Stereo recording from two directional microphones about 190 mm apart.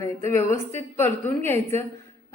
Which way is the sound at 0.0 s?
15° left (ahead or behind).